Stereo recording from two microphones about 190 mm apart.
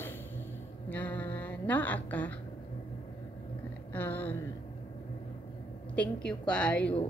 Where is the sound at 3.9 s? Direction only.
10° left (ahead or behind).